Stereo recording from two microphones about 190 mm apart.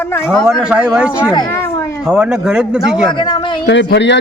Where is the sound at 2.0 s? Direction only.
5° right (ahead or behind).